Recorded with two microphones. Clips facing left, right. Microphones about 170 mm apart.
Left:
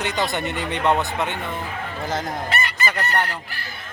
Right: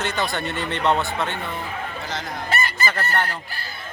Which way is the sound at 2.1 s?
50° left (ahead or behind).